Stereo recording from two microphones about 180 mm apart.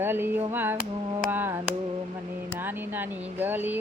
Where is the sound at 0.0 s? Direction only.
10° right (ahead or behind).